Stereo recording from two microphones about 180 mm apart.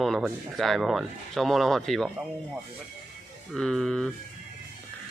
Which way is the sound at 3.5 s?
Centre (ahead or behind).